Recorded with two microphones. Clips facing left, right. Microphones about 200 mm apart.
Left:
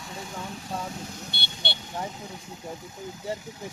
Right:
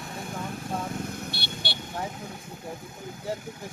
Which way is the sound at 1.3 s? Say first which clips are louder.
Right 1 dB; 25° left (ahead or behind).